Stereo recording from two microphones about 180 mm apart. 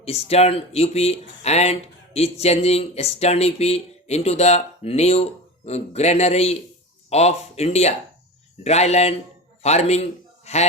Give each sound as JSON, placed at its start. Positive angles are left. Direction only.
{"t": 0.0, "sound": "a man's voice", "side_deg": 35}